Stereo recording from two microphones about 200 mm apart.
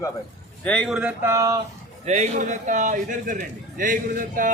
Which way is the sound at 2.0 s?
35° right (ahead or behind).